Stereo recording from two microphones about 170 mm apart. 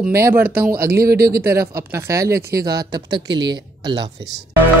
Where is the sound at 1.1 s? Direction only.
65° right (ahead or behind).